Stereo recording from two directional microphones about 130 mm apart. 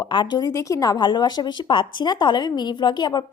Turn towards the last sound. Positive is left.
turn(degrees=35)  # may be behind; listen again after turning